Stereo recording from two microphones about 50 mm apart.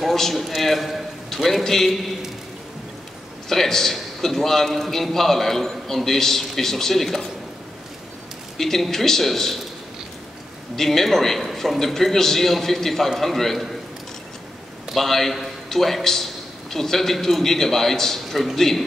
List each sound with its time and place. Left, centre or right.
0.0 s a man's voice: centre
3.4 s a man's voice: centre
8.5 s a man's voice: centre
10.8 s a man's voice: centre
15.0 s a man's voice: centre